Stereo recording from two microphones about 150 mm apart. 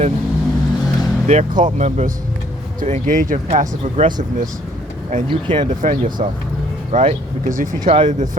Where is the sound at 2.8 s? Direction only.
60° right (ahead or behind).